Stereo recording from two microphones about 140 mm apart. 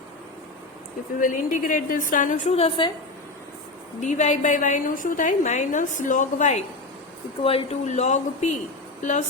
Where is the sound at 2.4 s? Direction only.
45° left (ahead or behind).